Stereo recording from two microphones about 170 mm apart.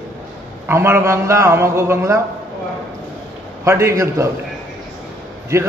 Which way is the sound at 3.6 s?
15° right (ahead or behind).